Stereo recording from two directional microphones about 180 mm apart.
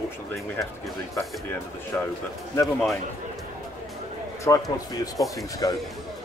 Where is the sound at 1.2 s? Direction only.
15° left (ahead or behind).